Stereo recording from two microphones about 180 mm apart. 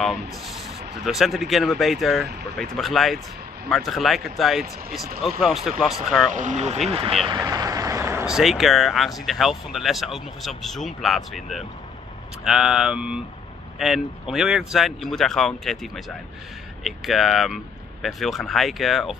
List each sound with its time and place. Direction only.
1.0 s speech: centre (ahead or behind)
6.3 s speech: 40° right (ahead or behind)
7.2 s vehicle: 20° right (ahead or behind)
8.3 s speech: centre (ahead or behind)